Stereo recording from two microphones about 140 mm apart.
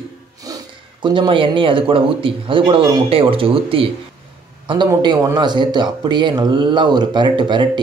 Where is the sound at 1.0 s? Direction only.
35° right (ahead or behind).